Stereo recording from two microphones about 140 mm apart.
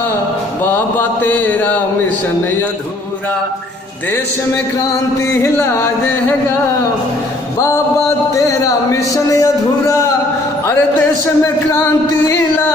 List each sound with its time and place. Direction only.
0.6 s mantra: 15° left (ahead or behind)
5.3 s speech: 20° left (ahead or behind)
8.3 s speech: 25° left (ahead or behind)
10.7 s music: 15° left (ahead or behind)